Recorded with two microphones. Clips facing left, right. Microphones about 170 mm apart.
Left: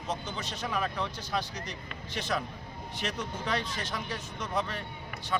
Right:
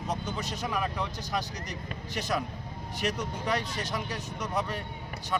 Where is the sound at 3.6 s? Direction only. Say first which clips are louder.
Right 2 dB; 40° right (ahead or behind).